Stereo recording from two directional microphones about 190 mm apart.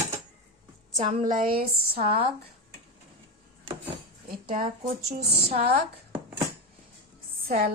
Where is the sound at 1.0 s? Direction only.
35° right (ahead or behind); by 2.0 s 50° right (ahead or behind).